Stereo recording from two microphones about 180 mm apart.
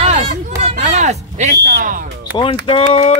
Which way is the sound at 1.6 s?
55° right (ahead or behind).